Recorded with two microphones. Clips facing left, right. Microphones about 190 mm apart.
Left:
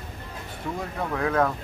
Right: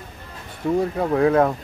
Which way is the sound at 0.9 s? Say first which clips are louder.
Right 5 dB; 30° right (ahead or behind).